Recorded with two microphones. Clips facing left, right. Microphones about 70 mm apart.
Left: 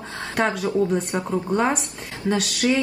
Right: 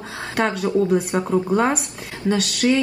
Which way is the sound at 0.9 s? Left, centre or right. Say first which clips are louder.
Right 4 dB; centre.